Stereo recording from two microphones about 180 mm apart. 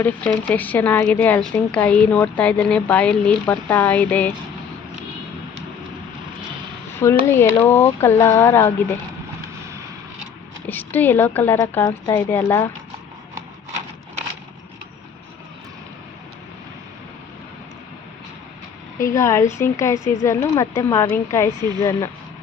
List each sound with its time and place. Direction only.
0.0 s speech: 10° left (ahead or behind)
7.0 s speech: 15° left (ahead or behind)
10.7 s speech: 10° left (ahead or behind)
19.1 s speech: 15° left (ahead or behind)